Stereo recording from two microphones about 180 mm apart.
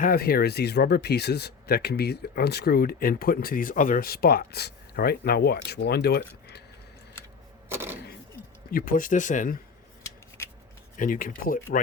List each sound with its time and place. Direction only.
0.0 s speech: 55° left (ahead or behind)
7.7 s a sound: 10° right (ahead or behind)
8.7 s speech: 50° left (ahead or behind)
10.0 s scissors: 15° left (ahead or behind)
10.9 s speech: 50° left (ahead or behind)